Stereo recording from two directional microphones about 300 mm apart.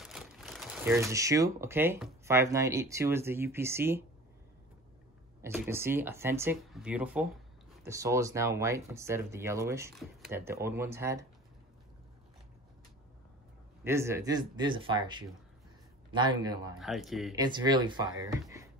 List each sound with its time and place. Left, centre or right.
0.0 s speech: centre
5.4 s speech: centre
13.8 s speech: centre
16.7 s speech: centre
17.4 s speech: centre